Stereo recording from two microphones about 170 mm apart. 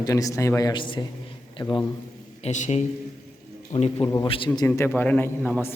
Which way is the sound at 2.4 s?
40° left (ahead or behind).